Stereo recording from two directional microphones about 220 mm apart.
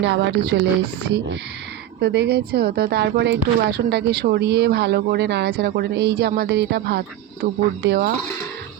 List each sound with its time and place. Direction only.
0.0 s speech: 50° right (ahead or behind)